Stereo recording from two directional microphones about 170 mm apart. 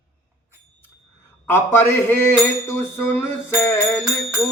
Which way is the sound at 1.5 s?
15° left (ahead or behind).